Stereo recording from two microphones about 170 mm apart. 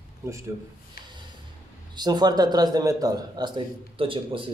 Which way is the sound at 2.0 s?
25° right (ahead or behind).